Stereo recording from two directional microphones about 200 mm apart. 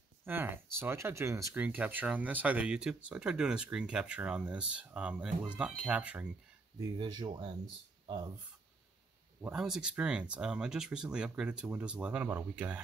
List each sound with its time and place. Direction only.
0.2 s speech: 10° right (ahead or behind)
6.8 s speech: 20° right (ahead or behind)
9.4 s speech: 5° right (ahead or behind)